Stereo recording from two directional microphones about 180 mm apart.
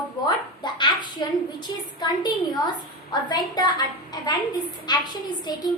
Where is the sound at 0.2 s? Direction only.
25° left (ahead or behind).